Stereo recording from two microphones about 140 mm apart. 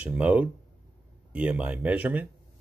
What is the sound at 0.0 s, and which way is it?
Speech, 10° right (ahead or behind).